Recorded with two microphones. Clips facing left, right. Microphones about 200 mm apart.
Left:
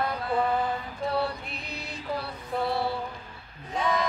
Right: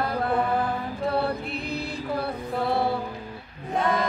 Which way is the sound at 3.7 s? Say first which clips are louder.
Right 3 dB; 55° right (ahead or behind).